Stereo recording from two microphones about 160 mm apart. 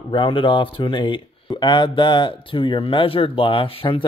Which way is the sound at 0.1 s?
30° left (ahead or behind).